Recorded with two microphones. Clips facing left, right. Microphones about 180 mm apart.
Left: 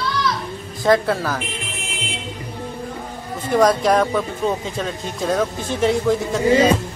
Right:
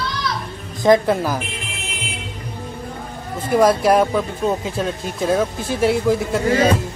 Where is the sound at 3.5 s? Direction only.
5° right (ahead or behind).